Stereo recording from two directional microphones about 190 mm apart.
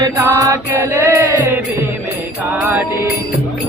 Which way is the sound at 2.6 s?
10° right (ahead or behind).